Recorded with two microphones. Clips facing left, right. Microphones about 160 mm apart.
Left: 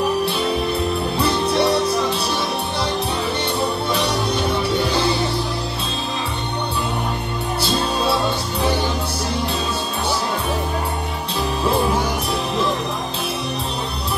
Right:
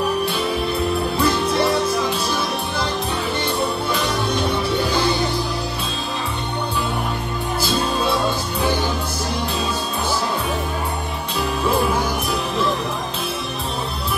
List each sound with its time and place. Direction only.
1.2 s music: 30° left (ahead or behind)